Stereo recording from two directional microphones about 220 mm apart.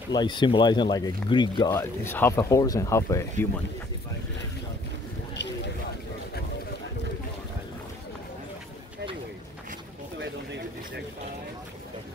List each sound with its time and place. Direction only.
0.1 s speech: 20° left (ahead or behind)